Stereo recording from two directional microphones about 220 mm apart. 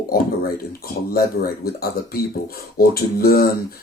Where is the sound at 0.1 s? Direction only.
45° left (ahead or behind).